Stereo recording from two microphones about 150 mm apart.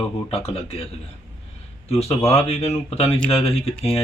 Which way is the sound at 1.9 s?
45° left (ahead or behind).